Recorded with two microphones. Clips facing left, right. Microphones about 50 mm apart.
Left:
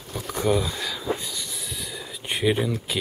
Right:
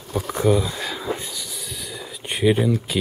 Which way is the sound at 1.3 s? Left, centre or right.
Centre.